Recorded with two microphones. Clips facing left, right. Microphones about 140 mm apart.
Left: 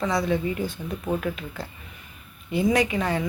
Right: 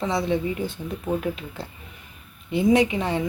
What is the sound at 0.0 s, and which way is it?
Speech, 25° right (ahead or behind).